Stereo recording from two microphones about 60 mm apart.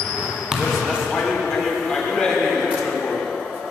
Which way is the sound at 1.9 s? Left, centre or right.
Centre.